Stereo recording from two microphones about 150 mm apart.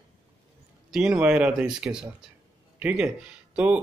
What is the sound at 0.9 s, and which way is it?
Speech, 5° right (ahead or behind).